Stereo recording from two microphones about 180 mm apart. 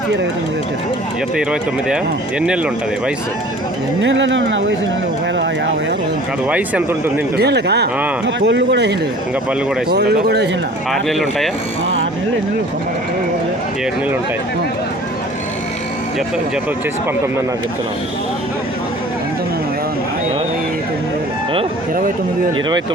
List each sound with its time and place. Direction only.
1.4 s speech: 5° right (ahead or behind)
4.0 s speech: 90° right
6.5 s speech: 5° right (ahead or behind)
7.3 s speech: 65° right (ahead or behind)
11.1 s speech: centre (ahead or behind)